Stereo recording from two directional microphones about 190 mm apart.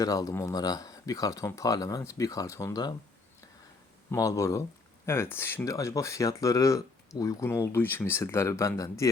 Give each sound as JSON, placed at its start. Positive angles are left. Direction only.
{"t": 0.0, "sound": "speech", "side_deg": 20}
{"t": 4.1, "sound": "speech", "side_deg": 15}